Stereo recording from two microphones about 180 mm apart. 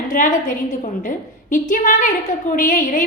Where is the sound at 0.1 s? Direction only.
50° left (ahead or behind).